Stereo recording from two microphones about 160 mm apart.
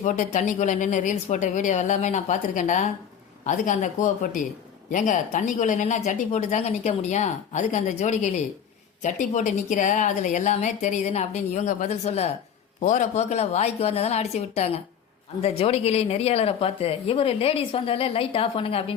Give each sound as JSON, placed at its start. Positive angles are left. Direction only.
{"t": 0.0, "sound": "a woman's voice", "side_deg": 50}
{"t": 12.8, "sound": "a woman's voice", "side_deg": 50}